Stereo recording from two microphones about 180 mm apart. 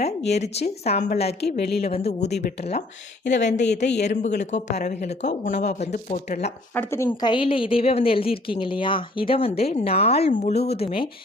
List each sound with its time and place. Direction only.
0.3 s a woman's voice: 40° left (ahead or behind)
1.4 s speech: 65° left (ahead or behind)
1.9 s a woman's voice: 35° left (ahead or behind)
3.2 s speech: 70° left (ahead or behind)
4.0 s a woman's voice: 40° left (ahead or behind)
6.7 s speech: 15° left (ahead or behind)
7.1 s a woman's voice: 25° left (ahead or behind)